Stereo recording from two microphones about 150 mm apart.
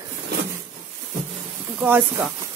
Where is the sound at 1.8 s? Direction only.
15° right (ahead or behind).